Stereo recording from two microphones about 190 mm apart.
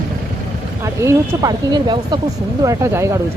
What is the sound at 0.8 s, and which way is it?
Speech, 15° right (ahead or behind).